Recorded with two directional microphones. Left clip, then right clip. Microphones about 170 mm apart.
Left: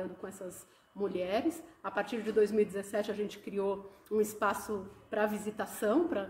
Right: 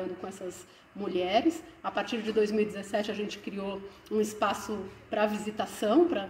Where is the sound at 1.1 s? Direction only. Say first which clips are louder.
Right 8 dB; 20° left (ahead or behind).